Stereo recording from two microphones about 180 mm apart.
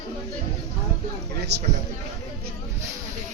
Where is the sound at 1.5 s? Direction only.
70° right (ahead or behind).